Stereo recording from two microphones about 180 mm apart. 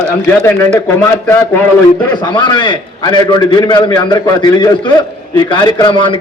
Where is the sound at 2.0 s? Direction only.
25° left (ahead or behind).